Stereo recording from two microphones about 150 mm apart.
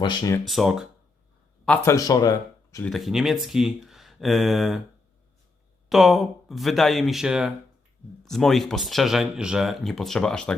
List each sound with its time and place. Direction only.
0.0 s speech: 30° left (ahead or behind)
0.4 s speech: centre (ahead or behind)
1.8 s speech: 20° left (ahead or behind)
2.8 s speech: centre (ahead or behind)
5.9 s speech: centre (ahead or behind)